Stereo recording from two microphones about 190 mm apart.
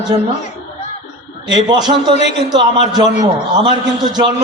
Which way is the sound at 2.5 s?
20° right (ahead or behind).